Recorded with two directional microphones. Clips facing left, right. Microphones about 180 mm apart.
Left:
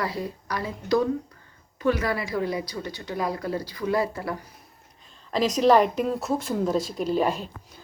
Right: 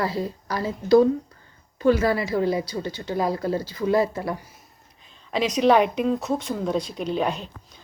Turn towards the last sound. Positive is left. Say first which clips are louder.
# left 1 dB
turn(degrees=5)  # may be behind; listen again after turning